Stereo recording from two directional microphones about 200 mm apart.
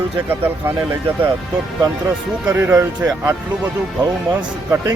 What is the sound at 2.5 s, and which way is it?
Speech, 10° right (ahead or behind).